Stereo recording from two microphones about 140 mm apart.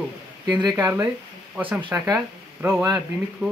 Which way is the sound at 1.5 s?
10° right (ahead or behind).